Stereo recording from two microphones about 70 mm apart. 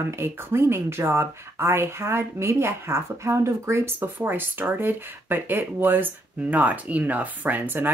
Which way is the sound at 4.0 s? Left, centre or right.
Right.